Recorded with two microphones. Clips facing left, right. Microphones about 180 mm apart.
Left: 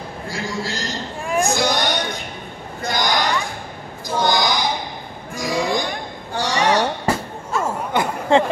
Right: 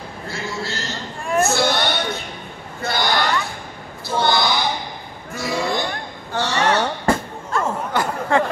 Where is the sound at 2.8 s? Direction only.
15° left (ahead or behind).